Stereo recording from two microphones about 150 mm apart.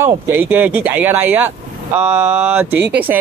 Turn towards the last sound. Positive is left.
turn(degrees=-10)  # may be behind; listen again after turning